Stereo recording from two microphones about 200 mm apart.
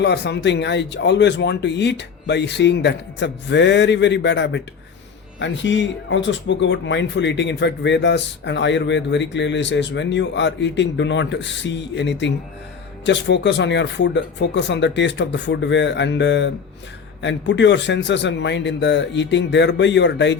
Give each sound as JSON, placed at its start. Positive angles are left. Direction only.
{"t": 0.0, "sound": "speech", "side_deg": 55}